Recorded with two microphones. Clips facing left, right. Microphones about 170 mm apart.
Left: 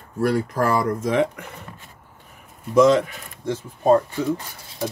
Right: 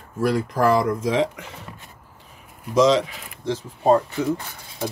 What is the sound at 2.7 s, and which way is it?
Speech, 55° left (ahead or behind).